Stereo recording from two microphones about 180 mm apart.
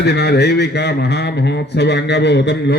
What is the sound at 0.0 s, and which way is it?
A man's voice, 65° left (ahead or behind).